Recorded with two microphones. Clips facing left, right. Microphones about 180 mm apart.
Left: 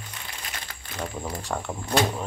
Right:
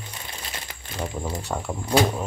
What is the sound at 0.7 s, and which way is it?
Crumpling, 20° right (ahead or behind).